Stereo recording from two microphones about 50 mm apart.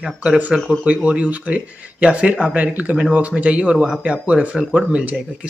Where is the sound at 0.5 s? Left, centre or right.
Centre.